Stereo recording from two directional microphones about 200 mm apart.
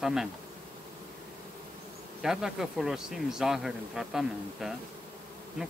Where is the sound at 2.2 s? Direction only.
Centre (ahead or behind).